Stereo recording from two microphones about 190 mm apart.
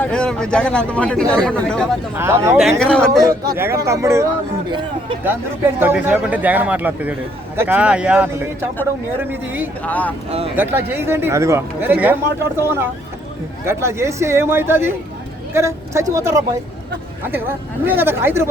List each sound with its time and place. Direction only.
0.0 s speech: 5° left (ahead or behind)
2.1 s a man's voice: 15° right (ahead or behind)
2.6 s speech: centre (ahead or behind)
3.6 s a man's voice: 15° right (ahead or behind)
4.7 s speech: 25° right (ahead or behind)
5.8 s a man's voice: 10° right (ahead or behind)
9.8 s speech: 10° left (ahead or behind)
10.5 s a man's voice: 10° right (ahead or behind)
17.8 s a man's voice: 10° right (ahead or behind)